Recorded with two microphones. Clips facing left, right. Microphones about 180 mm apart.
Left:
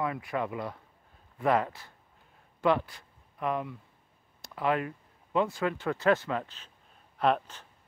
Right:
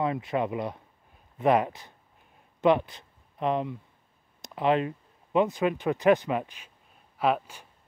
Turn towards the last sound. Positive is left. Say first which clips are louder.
# right 1 dB
turn(degrees=-10)  # may be behind; listen again after turning